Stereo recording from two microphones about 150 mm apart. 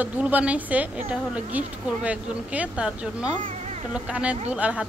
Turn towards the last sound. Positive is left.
turn(degrees=-10)  # may be behind; listen again after turning